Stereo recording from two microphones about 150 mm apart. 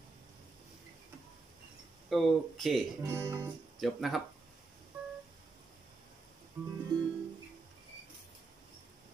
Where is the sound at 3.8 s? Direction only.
Centre (ahead or behind).